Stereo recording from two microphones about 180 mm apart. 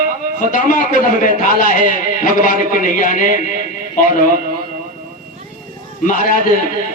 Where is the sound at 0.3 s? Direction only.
45° left (ahead or behind).